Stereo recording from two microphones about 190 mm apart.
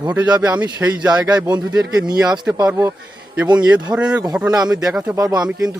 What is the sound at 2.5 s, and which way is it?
Speech, 15° right (ahead or behind).